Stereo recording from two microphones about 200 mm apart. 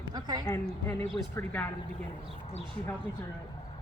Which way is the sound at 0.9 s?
10° left (ahead or behind).